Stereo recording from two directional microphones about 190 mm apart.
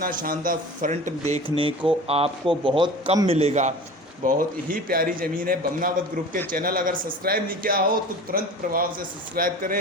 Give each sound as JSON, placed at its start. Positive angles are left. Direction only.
{"t": 0.0, "sound": "a man's voice", "side_deg": -45}